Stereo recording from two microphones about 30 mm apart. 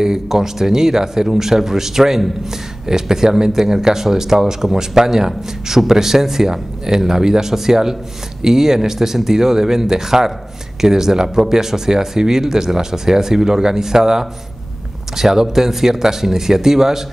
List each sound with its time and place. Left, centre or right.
0.3 s speech: centre